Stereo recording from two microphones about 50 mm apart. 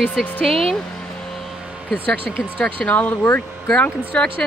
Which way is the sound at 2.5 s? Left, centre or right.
Left.